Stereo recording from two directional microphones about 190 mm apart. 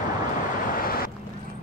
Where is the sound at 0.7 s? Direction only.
50° left (ahead or behind).